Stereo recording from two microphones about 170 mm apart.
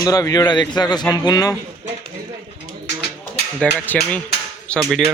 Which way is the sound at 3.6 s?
10° left (ahead or behind).